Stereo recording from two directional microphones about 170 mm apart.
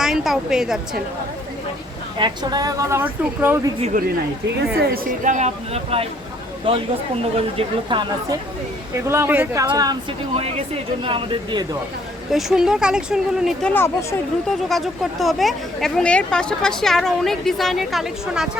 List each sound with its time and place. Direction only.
0.0 s a woman's voice: 5° right (ahead or behind)
2.1 s speech: 25° right (ahead or behind)
3.9 s speech: 50° right (ahead or behind)
5.2 s speech: 45° right (ahead or behind); by 8.4 s 30° right (ahead or behind)
9.0 s speech: 15° right (ahead or behind)
9.6 s speech: 25° right (ahead or behind)
12.3 s speech: centre (ahead or behind); by 14.2 s 15° left (ahead or behind)
14.7 s speech: centre (ahead or behind)